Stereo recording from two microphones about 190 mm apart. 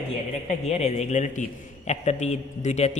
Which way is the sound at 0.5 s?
35° left (ahead or behind).